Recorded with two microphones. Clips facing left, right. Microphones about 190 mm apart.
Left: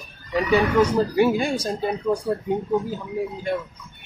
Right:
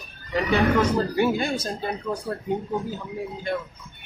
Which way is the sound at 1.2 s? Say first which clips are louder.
Left 3 dB; 10° left (ahead or behind).